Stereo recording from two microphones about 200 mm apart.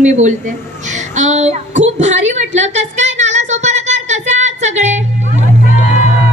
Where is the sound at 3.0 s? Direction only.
35° right (ahead or behind).